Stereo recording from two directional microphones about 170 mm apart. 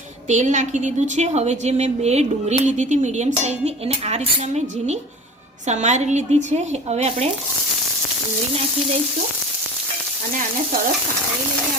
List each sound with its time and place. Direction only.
0.3 s a woman's voice: 45° right (ahead or behind)